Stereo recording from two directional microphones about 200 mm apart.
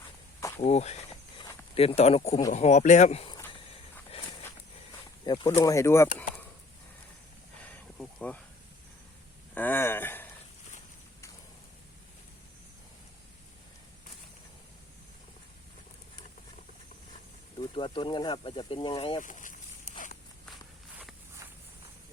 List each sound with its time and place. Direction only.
0.3 s insect: 15° left (ahead or behind)
0.6 s speech: 35° left (ahead or behind)
4.4 s a sound: 20° left (ahead or behind)
7.9 s a sound: 5° left (ahead or behind)
9.6 s speech: 10° left (ahead or behind)
17.6 s speech: 25° left (ahead or behind)
19.2 s snake: 40° left (ahead or behind)